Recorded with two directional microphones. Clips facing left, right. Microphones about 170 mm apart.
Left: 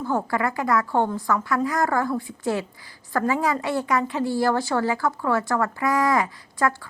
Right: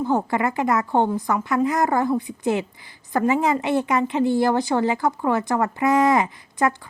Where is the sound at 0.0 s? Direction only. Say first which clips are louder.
Right 3 dB; 20° right (ahead or behind).